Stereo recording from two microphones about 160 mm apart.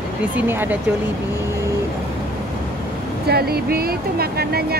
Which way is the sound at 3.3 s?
80° right.